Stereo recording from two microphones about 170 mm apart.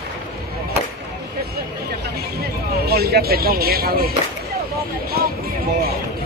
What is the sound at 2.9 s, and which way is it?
Speech, 70° right (ahead or behind).